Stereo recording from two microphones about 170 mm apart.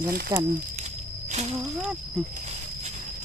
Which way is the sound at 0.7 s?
40° right (ahead or behind).